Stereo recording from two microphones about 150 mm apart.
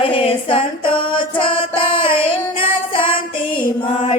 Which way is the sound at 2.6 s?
35° left (ahead or behind).